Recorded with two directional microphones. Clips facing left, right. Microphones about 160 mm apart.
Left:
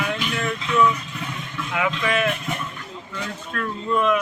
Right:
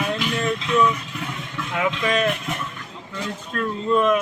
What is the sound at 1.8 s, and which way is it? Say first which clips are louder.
Speech: right 1 dB; 35° right (ahead or behind).